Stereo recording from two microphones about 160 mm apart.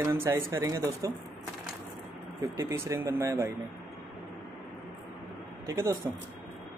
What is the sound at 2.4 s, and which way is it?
Speech, 15° right (ahead or behind).